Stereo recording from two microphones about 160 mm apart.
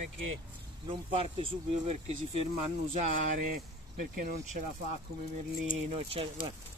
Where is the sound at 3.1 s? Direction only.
55° right (ahead or behind).